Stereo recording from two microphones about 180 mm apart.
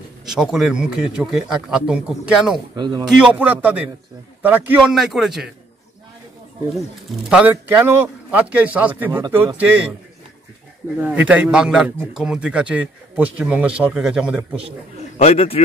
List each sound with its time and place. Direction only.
0.2 s a man's voice: centre (ahead or behind)
2.7 s speech: 25° right (ahead or behind)
3.2 s a man's voice: 10° right (ahead or behind)
7.2 s a man's voice: 5° right (ahead or behind)
11.0 s a man's voice: 10° right (ahead or behind)
15.1 s a man's voice: 35° left (ahead or behind)